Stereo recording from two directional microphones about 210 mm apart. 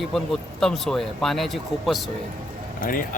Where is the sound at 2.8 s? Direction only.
40° left (ahead or behind).